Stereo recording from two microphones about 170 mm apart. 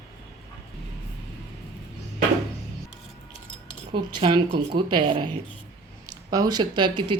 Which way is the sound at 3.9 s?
30° right (ahead or behind).